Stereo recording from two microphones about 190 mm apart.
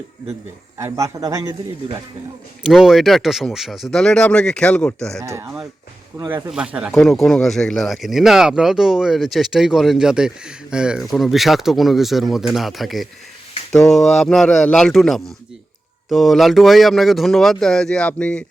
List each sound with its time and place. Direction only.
0.8 s a man's voice: 15° right (ahead or behind)
2.6 s speech: centre (ahead or behind)
5.2 s a man's voice: 15° right (ahead or behind); by 18.4 s 5° left (ahead or behind)